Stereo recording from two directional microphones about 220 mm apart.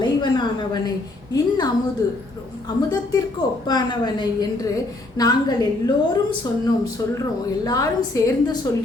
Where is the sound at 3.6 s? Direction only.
20° left (ahead or behind).